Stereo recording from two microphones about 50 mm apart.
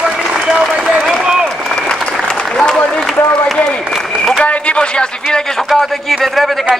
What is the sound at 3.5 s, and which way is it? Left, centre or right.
Applause, left.